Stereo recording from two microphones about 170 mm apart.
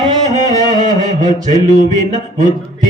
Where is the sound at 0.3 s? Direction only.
45° right (ahead or behind).